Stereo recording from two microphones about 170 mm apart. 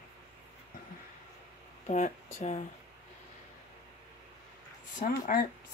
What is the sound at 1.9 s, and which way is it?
Speech, 45° left (ahead or behind).